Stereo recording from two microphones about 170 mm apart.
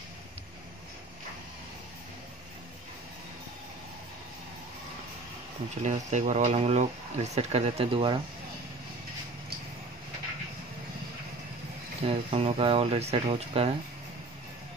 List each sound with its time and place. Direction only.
5.8 s speech: 45° right (ahead or behind)
12.0 s speech: 35° right (ahead or behind)